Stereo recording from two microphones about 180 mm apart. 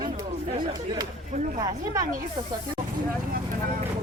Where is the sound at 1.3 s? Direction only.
45° right (ahead or behind).